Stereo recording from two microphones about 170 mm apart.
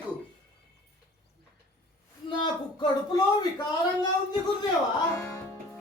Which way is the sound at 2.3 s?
25° left (ahead or behind).